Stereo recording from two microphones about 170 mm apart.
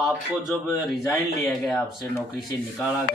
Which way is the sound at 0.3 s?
Centre (ahead or behind).